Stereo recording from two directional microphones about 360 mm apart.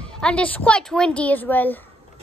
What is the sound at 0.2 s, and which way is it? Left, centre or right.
Speech, centre.